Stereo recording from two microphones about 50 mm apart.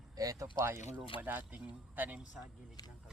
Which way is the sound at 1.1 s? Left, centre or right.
Right.